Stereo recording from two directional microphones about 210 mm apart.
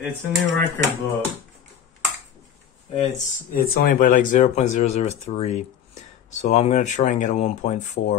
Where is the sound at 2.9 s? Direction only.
35° left (ahead or behind).